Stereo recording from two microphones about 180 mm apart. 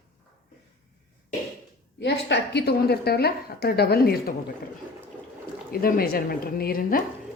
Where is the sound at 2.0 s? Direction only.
75° left (ahead or behind).